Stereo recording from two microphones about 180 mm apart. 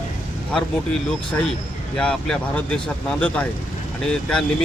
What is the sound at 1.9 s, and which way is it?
Speech, 5° left (ahead or behind).